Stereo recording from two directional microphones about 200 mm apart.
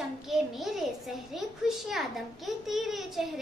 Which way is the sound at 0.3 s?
Centre (ahead or behind).